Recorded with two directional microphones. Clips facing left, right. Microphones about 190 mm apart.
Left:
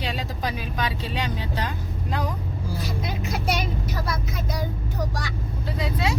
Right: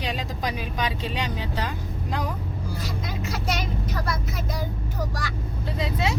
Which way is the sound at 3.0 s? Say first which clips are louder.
Left 2 dB; 15° left (ahead or behind).